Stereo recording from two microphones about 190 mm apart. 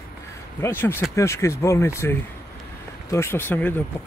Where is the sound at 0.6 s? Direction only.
10° left (ahead or behind).